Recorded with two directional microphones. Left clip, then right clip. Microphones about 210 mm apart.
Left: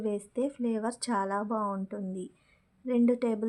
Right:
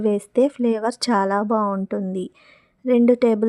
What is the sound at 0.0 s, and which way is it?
A woman's voice, 40° right (ahead or behind).